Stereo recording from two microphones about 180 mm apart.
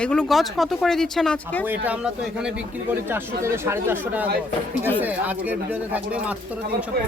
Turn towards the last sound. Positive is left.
turn(degrees=-5)  # may be behind; listen again after turning